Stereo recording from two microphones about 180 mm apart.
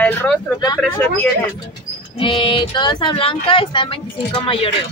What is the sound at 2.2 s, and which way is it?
Speech, 30° left (ahead or behind).